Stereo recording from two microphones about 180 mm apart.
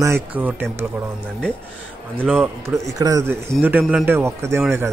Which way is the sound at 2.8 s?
20° right (ahead or behind).